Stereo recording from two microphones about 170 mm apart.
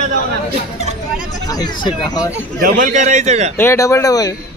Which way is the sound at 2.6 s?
50° right (ahead or behind).